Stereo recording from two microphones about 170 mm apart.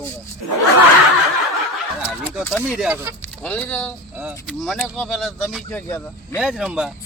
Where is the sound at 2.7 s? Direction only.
10° right (ahead or behind).